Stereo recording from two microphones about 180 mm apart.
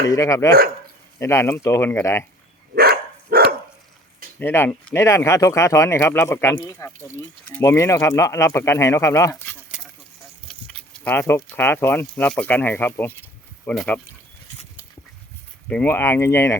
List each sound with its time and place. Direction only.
0.1 s speech: 15° left (ahead or behind)
2.7 s dog: 60° right (ahead or behind)
4.4 s speech: 10° left (ahead or behind)
9.7 s a sound: 5° right (ahead or behind)
10.5 s speech: 5° left (ahead or behind)
15.7 s speech: 10° left (ahead or behind)